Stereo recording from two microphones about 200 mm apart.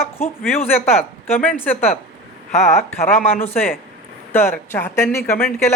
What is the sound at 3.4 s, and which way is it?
Speech, 10° left (ahead or behind).